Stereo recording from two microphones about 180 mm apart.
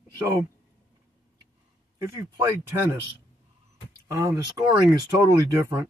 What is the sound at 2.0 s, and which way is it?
Speech, 15° right (ahead or behind).